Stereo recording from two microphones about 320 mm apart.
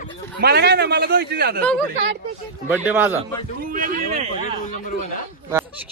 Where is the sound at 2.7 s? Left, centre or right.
Centre.